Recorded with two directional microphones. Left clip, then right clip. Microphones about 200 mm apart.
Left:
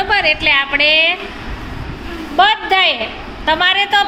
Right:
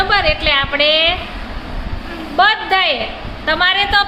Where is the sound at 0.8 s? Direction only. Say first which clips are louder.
Left 1 dB; 35° right (ahead or behind).